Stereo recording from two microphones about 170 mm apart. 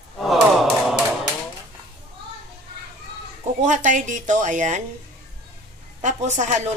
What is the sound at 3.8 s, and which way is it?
Speech, 45° right (ahead or behind).